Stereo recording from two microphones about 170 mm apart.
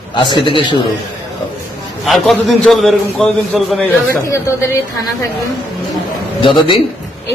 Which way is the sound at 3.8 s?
15° left (ahead or behind).